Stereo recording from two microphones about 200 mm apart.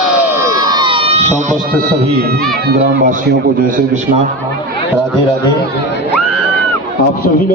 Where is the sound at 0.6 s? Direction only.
20° right (ahead or behind).